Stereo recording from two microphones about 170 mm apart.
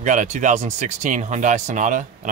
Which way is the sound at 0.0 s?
45° right (ahead or behind).